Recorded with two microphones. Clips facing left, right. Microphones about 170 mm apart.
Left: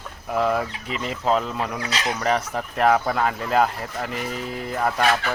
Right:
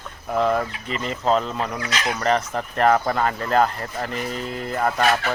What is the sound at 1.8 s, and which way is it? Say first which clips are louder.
Speech: even; 30° left (ahead or behind).